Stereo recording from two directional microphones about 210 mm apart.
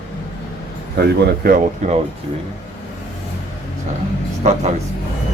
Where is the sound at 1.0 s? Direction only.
45° right (ahead or behind).